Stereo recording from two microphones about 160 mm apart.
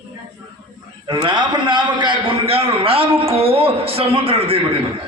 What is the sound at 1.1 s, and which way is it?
A man's voice, 30° right (ahead or behind).